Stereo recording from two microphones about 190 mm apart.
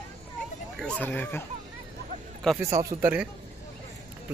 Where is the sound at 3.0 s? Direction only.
10° right (ahead or behind).